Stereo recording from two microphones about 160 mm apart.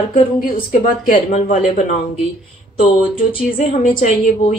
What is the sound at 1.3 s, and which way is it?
Speech, 45° left (ahead or behind).